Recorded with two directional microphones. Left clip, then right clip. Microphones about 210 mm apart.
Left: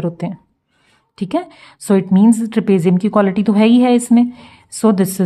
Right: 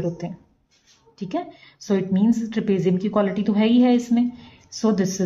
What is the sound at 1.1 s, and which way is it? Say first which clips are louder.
A woman's voice: left 8 dB; 40° left (ahead or behind).